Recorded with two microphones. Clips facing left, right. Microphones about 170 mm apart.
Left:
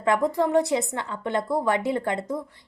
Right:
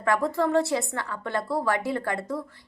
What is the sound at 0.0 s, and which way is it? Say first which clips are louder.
A woman's voice: left 2 dB; 20° left (ahead or behind).